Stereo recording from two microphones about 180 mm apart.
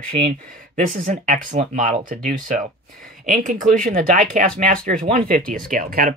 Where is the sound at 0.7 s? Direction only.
45° right (ahead or behind).